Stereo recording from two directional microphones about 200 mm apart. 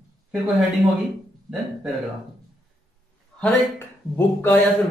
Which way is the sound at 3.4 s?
10° left (ahead or behind).